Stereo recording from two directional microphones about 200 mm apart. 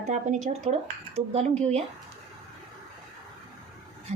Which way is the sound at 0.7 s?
35° right (ahead or behind).